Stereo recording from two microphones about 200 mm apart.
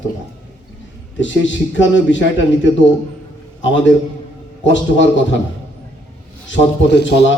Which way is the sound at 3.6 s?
65° left (ahead or behind).